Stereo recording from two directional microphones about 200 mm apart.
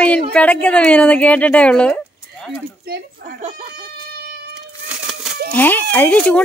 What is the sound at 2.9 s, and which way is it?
Speech, 50° right (ahead or behind).